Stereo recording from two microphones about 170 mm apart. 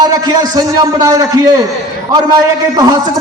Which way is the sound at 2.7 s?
20° right (ahead or behind).